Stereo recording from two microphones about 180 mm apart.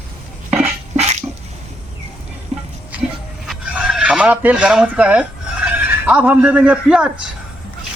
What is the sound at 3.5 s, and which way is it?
Speech, 5° right (ahead or behind).